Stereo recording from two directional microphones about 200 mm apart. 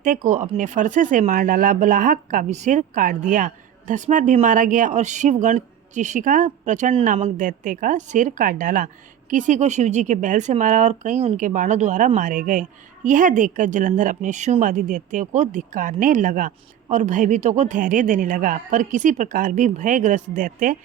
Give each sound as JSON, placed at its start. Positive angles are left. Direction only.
{"t": 0.0, "sound": "speech", "side_deg": -40}